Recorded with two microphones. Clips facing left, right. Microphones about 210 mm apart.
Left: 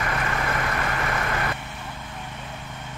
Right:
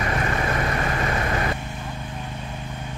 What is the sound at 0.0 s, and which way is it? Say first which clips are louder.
Vehicle: right 3 dB; 25° right (ahead or behind).